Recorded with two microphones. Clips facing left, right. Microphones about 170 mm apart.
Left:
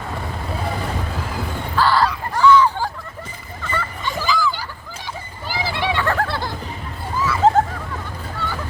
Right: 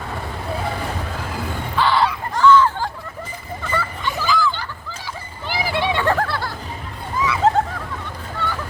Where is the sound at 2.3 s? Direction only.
10° left (ahead or behind).